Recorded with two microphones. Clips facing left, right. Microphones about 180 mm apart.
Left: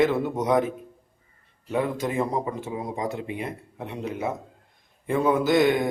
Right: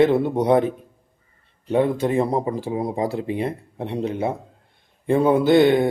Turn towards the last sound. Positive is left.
turn(degrees=-30)  # may be behind; listen again after turning